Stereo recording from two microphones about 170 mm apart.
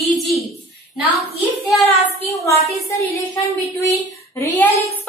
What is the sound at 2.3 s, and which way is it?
A woman's voice, 15° left (ahead or behind).